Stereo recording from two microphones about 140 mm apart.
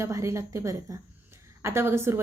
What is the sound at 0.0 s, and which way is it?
A woman's voice, 20° right (ahead or behind).